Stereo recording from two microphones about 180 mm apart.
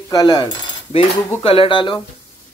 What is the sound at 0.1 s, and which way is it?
Speech, 25° left (ahead or behind).